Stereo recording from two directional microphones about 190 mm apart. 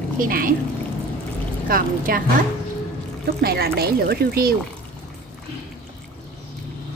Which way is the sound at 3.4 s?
55° right (ahead or behind).